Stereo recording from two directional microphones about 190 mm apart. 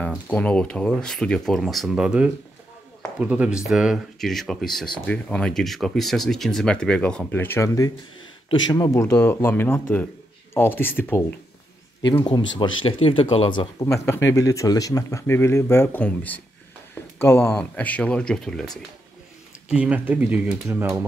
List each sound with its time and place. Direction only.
0.1 s speech: 5° left (ahead or behind)
12.0 s speech: 25° left (ahead or behind); by 21.0 s 15° right (ahead or behind)